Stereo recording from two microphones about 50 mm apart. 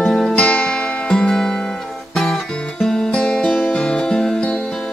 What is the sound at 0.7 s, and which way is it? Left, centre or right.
Music, centre.